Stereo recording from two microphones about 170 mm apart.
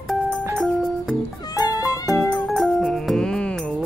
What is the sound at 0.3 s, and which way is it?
Music, 15° right (ahead or behind).